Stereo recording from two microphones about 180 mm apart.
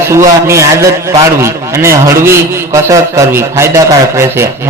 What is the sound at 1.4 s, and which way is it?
A man's voice, 15° right (ahead or behind).